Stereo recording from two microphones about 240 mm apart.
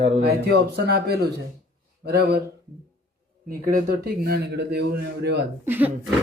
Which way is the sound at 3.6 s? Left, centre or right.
Right.